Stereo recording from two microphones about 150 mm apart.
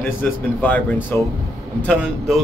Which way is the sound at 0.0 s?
15° left (ahead or behind).